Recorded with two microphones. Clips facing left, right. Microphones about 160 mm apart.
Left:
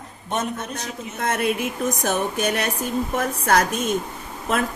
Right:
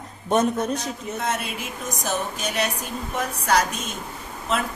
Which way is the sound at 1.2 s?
55° left (ahead or behind).